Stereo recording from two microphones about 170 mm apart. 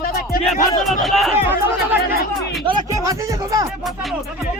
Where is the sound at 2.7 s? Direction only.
30° right (ahead or behind).